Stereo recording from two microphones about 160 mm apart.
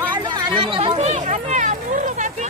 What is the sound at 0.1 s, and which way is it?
Chatter, 30° right (ahead or behind).